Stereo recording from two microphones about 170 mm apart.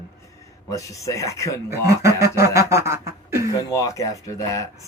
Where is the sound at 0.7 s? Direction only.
20° left (ahead or behind).